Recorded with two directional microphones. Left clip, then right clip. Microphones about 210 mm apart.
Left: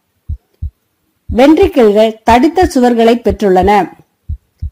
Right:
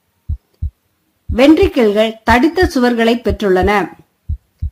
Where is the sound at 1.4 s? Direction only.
15° left (ahead or behind).